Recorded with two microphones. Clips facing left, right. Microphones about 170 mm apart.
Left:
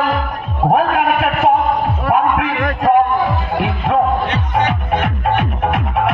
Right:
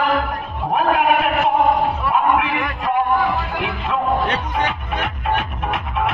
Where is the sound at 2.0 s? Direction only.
50° left (ahead or behind).